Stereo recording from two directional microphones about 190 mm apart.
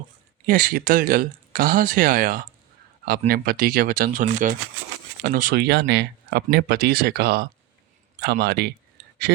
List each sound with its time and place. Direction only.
0.4 s speech: 45° right (ahead or behind)